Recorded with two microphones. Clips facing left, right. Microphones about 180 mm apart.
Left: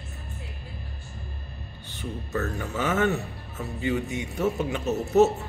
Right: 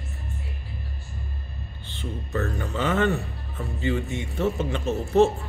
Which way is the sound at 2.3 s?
Centre (ahead or behind).